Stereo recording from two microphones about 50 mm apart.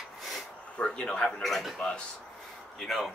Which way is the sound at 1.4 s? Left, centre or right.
Centre.